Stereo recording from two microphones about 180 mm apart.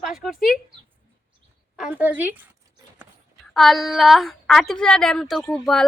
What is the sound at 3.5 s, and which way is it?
A woman's voice, centre (ahead or behind).